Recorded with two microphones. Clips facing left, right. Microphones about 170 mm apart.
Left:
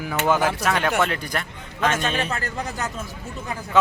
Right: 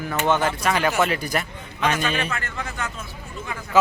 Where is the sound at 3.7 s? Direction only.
5° right (ahead or behind).